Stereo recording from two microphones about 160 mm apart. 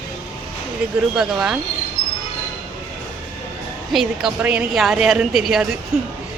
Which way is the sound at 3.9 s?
Centre (ahead or behind).